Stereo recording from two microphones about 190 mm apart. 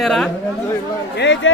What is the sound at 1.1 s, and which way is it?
Speech, 70° left (ahead or behind).